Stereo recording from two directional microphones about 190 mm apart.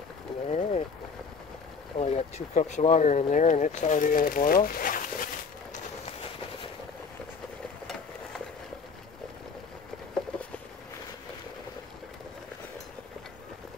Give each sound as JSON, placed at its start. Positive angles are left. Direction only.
{"t": 0.5, "sound": "vehicle", "side_deg": 35}
{"t": 2.0, "sound": "speech", "side_deg": 35}